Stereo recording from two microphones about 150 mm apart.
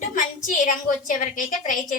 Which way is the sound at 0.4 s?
60° left (ahead or behind).